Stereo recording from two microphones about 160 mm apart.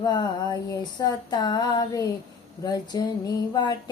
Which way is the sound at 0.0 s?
25° left (ahead or behind).